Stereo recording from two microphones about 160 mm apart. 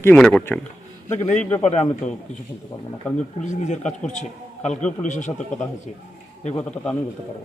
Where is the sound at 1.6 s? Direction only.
45° left (ahead or behind).